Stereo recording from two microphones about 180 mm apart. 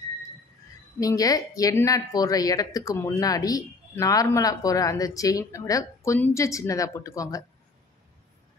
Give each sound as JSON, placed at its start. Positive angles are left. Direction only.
{"t": 0.9, "sound": "a woman's voice", "side_deg": 20}